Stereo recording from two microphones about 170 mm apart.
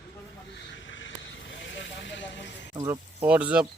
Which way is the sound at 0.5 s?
90° left.